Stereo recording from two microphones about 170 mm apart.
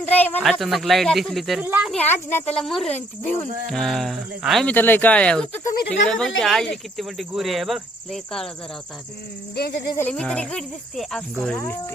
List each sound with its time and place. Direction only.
0.0 s speech: 10° left (ahead or behind)
0.4 s speech: centre (ahead or behind)
1.6 s speech: 10° right (ahead or behind)
1.9 s speech: 10° left (ahead or behind)
9.6 s speech: 70° left (ahead or behind)
10.1 s speech: 5° left (ahead or behind)